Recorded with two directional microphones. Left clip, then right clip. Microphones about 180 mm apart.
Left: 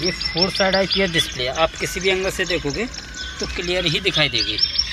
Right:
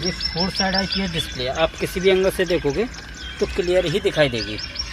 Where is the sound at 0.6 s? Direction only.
25° left (ahead or behind).